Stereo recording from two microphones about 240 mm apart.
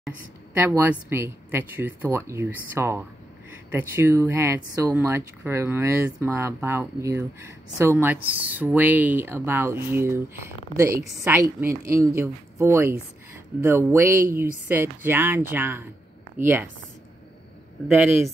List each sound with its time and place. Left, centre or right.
0.6 s speech: centre
18.0 s speech: centre